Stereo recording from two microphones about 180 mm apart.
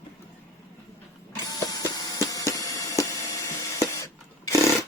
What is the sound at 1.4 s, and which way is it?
Printer, 20° left (ahead or behind).